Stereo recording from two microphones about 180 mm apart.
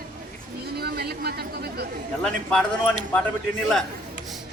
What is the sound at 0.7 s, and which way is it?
Speech, 60° right (ahead or behind).